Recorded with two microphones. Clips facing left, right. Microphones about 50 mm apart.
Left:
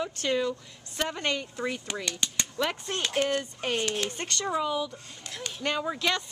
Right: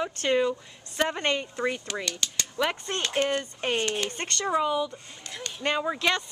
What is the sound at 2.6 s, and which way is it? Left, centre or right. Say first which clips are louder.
Speech: right 2 dB; centre.